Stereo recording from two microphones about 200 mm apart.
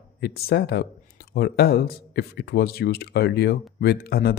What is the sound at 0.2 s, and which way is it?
Speech, 50° left (ahead or behind).